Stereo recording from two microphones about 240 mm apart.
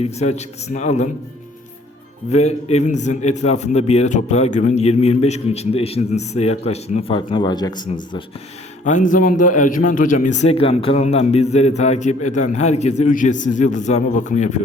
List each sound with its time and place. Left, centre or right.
0.0 s a man's voice: left
2.3 s a man's voice: left
8.8 s a man's voice: left